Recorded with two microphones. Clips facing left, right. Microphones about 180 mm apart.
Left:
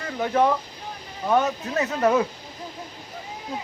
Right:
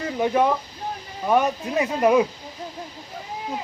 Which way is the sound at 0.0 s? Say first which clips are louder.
Right 2 dB; 15° right (ahead or behind).